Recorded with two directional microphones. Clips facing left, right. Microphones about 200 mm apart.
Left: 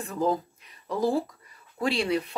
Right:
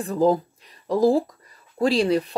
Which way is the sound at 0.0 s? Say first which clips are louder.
Right 7 dB; 35° right (ahead or behind).